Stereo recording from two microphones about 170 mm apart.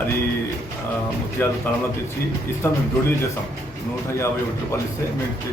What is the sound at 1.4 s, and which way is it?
Speech, 15° left (ahead or behind).